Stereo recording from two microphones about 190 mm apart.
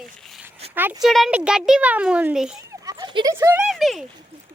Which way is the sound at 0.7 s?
10° right (ahead or behind).